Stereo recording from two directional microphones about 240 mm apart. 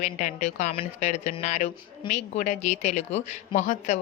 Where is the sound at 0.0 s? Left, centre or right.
Left.